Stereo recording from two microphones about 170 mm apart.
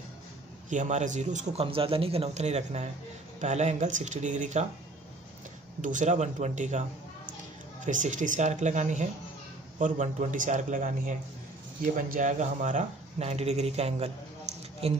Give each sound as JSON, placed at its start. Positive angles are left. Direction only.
{"t": 0.7, "sound": "a man's voice", "side_deg": -45}
{"t": 5.8, "sound": "a man's voice", "side_deg": -50}
{"t": 7.8, "sound": "a man's voice", "side_deg": -45}